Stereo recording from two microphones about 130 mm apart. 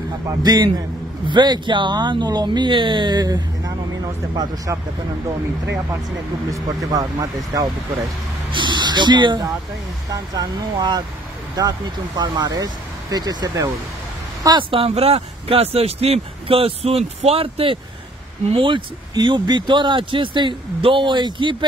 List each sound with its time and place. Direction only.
0.3 s a man's voice: 30° right (ahead or behind)
6.5 s a man's voice: 25° right (ahead or behind)